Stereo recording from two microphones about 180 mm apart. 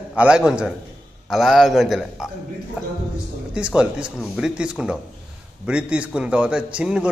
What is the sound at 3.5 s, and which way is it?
A man's voice, 5° right (ahead or behind).